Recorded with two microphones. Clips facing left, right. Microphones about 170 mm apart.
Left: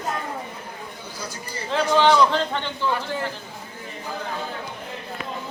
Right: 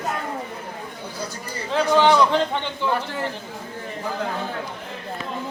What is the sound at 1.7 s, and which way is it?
Speech, 10° right (ahead or behind).